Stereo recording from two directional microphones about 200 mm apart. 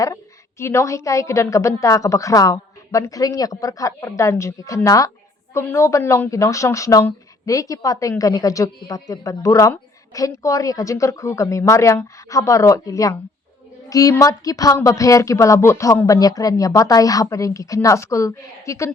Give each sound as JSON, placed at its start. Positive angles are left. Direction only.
{"t": 0.6, "sound": "speech", "side_deg": 15}